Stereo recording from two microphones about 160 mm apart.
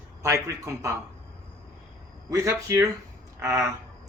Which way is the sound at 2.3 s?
20° right (ahead or behind).